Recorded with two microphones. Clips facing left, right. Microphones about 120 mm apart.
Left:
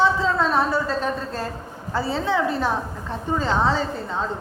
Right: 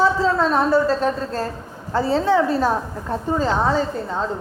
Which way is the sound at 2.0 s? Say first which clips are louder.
Right 5 dB; 40° right (ahead or behind).